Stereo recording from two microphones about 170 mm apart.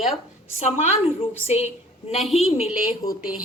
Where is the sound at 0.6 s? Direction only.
40° left (ahead or behind).